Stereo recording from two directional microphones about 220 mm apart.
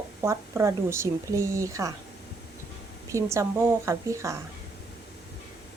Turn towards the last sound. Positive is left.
turn(degrees=-15)  # may be behind; listen again after turning